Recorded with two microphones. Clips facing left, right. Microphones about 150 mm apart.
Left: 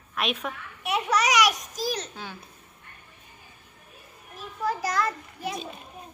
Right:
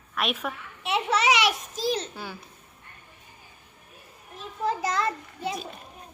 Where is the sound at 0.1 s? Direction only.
Centre (ahead or behind).